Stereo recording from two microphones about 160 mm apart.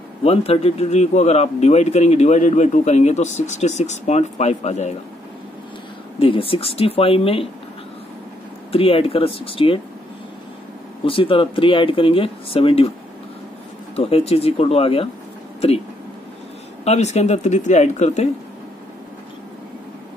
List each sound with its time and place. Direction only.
0.2 s speech: 40° left (ahead or behind)
6.1 s speech: 35° left (ahead or behind)
8.7 s speech: 35° left (ahead or behind)
11.1 s speech: 35° left (ahead or behind)
13.9 s speech: 40° left (ahead or behind)
16.8 s speech: 45° left (ahead or behind)